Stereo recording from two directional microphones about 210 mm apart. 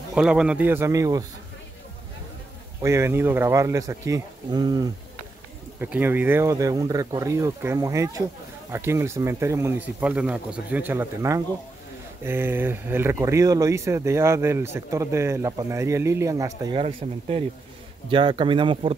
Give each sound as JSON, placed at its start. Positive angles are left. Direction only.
{"t": 0.1, "sound": "speech", "side_deg": -5}
{"t": 2.8, "sound": "speech", "side_deg": -15}
{"t": 17.0, "sound": "speech", "side_deg": -30}